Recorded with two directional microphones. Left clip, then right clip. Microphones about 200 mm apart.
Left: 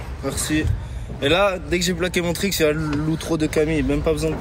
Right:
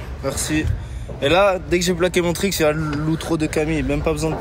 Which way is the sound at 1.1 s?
20° right (ahead or behind).